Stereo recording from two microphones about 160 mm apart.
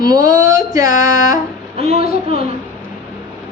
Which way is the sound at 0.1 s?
25° right (ahead or behind).